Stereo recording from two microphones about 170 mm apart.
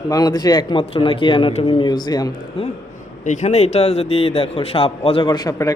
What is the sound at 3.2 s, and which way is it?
Speech, 45° left (ahead or behind).